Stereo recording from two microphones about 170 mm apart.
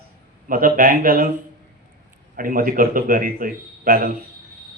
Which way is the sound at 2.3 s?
55° right (ahead or behind).